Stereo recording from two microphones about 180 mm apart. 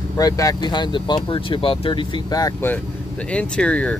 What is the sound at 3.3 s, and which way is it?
Speech, 5° left (ahead or behind).